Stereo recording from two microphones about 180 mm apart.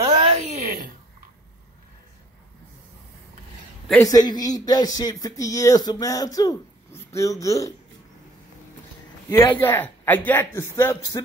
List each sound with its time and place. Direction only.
0.0 s a sound: 35° right (ahead or behind)
4.0 s speech: 20° left (ahead or behind)
9.6 s speech: 10° left (ahead or behind)